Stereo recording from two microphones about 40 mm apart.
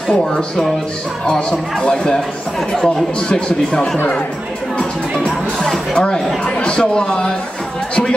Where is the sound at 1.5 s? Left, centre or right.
Left.